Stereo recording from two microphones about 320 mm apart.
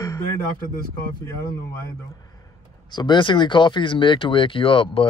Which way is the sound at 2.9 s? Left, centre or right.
Centre.